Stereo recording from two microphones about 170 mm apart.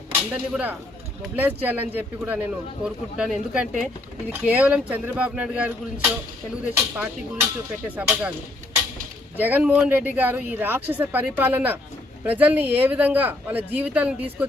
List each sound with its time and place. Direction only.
0.5 s speech: 10° right (ahead or behind)
9.4 s speech: 10° right (ahead or behind)